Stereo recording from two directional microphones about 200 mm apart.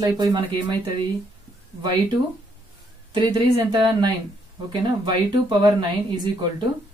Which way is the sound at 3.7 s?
20° right (ahead or behind).